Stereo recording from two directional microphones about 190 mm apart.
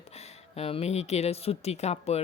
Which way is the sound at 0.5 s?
35° left (ahead or behind).